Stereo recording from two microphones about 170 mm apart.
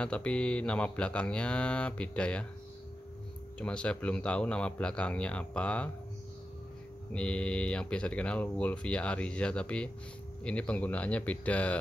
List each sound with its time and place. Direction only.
0.0 s speech: 5° left (ahead or behind)
3.5 s speech: 5° left (ahead or behind)
7.1 s speech: 5° left (ahead or behind)